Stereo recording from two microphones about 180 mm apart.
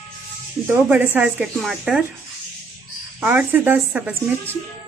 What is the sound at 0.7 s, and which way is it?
Speech, 15° right (ahead or behind).